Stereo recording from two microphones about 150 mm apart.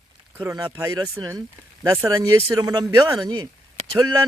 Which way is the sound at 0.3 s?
25° right (ahead or behind).